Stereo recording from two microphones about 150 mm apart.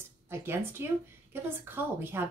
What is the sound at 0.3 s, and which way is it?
A woman's voice, 15° right (ahead or behind).